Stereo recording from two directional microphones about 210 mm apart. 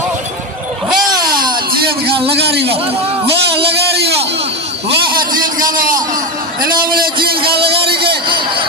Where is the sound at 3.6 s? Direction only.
50° right (ahead or behind).